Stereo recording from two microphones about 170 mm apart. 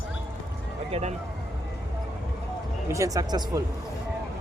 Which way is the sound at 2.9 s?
20° right (ahead or behind).